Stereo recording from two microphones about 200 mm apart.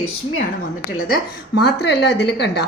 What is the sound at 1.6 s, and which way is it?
A woman's voice, 55° left (ahead or behind).